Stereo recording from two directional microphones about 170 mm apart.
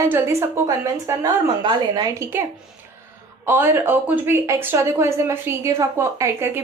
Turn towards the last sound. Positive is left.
turn(degrees=-15)  # may be behind; listen again after turning